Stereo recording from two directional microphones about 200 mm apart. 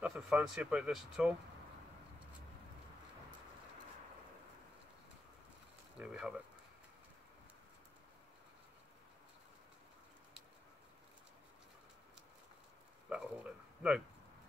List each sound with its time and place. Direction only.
0.0 s speech: 5° right (ahead or behind)
5.9 s speech: 5° right (ahead or behind)
13.1 s a sound: 5° right (ahead or behind)